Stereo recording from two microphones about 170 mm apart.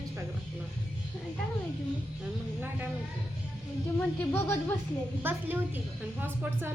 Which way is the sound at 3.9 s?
15° left (ahead or behind).